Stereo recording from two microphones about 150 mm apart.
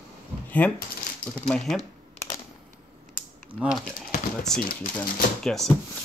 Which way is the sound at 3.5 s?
10° right (ahead or behind).